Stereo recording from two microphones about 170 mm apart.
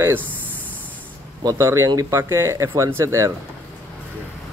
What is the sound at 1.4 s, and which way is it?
Speech, 20° right (ahead or behind).